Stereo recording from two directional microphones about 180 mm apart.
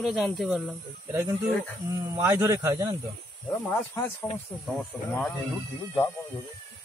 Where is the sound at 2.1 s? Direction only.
15° right (ahead or behind).